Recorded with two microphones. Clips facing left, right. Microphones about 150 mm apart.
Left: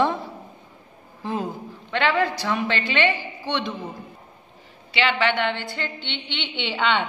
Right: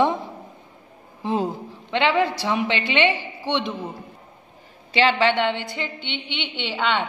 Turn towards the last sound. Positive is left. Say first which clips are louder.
# left 1 dB
turn(degrees=-5)  # may be behind; listen again after turning